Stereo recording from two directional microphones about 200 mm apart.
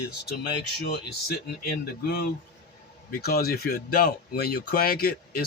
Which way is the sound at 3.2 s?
50° left (ahead or behind).